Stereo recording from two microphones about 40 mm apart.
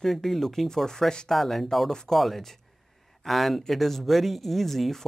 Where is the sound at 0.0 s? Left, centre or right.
Centre.